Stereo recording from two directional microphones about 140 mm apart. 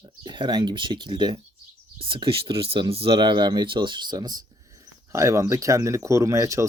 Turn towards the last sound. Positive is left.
turn(degrees=-20)  # may be behind; listen again after turning